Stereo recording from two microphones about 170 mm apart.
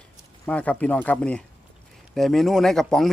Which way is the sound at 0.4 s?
10° left (ahead or behind).